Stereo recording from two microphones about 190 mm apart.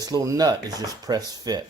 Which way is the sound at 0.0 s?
20° right (ahead or behind).